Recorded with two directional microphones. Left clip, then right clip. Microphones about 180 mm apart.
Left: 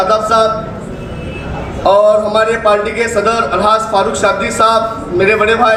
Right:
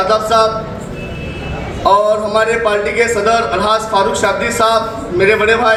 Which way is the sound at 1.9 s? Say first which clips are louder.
Left 3 dB; 30° left (ahead or behind).